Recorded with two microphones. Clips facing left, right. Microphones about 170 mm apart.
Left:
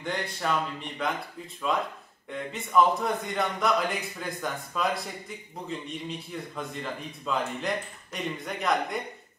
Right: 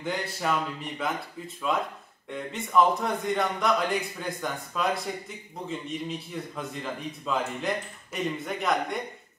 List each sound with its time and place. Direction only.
0.0 s a man's voice: 5° right (ahead or behind)